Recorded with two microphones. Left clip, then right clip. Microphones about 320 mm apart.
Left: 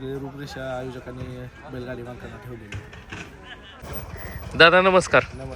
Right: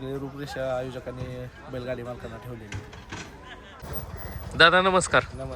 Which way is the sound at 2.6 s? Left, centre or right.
Right.